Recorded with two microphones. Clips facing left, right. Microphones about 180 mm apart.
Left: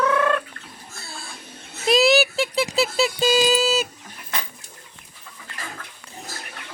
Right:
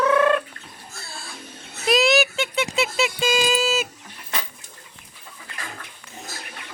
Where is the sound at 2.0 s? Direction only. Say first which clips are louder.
Left 3 dB; 35° left (ahead or behind).